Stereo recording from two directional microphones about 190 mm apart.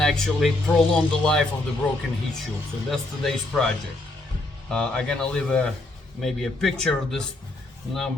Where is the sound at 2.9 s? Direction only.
Centre (ahead or behind).